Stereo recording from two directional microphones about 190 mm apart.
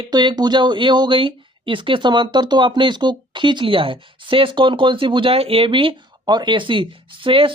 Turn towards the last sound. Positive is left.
turn(degrees=-25)  # may be behind; listen again after turning